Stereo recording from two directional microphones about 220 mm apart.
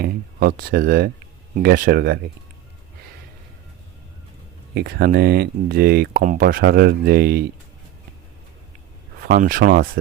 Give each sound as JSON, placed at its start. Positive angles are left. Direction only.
{"t": 0.0, "sound": "speech", "side_deg": -45}
{"t": 4.7, "sound": "speech", "side_deg": -45}
{"t": 9.2, "sound": "speech", "side_deg": -40}